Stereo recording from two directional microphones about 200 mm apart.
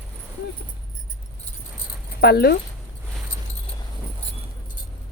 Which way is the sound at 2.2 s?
50° left (ahead or behind).